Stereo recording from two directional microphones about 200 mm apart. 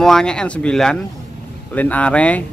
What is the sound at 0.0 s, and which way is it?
A man's voice, 5° left (ahead or behind).